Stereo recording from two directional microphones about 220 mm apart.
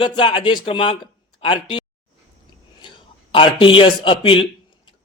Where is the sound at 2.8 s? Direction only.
20° left (ahead or behind).